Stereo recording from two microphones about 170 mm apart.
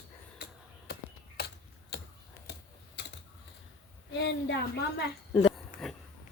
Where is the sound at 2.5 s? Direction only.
70° left (ahead or behind).